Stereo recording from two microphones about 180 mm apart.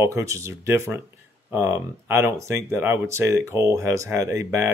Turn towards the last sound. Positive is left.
turn(degrees=-15)  # may be behind; listen again after turning